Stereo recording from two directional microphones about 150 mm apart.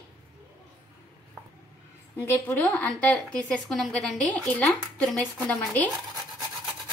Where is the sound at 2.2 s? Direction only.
15° left (ahead or behind).